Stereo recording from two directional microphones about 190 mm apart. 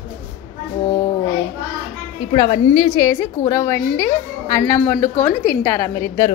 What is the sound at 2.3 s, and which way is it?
A woman's voice, 25° left (ahead or behind).